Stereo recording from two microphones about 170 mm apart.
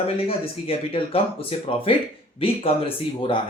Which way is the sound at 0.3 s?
35° left (ahead or behind).